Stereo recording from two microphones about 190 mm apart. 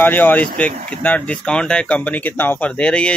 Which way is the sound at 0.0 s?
10° left (ahead or behind).